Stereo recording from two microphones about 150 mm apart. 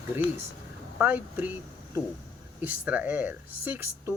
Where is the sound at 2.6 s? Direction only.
10° right (ahead or behind).